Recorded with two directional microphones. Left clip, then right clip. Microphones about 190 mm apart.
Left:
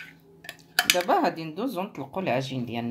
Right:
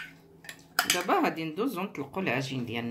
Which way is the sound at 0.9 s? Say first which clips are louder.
Left 4 dB; 35° left (ahead or behind).